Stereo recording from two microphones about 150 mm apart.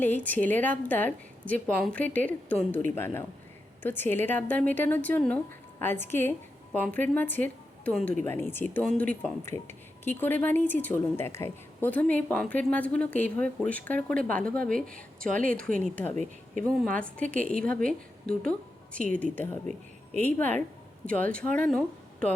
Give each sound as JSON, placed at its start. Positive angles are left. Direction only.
{"t": 0.0, "sound": "speech", "side_deg": 10}
{"t": 15.3, "sound": "speech", "side_deg": -60}
{"t": 16.6, "sound": "speech", "side_deg": 5}